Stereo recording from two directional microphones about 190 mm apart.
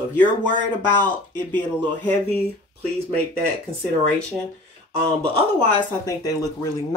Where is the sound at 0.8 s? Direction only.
10° left (ahead or behind).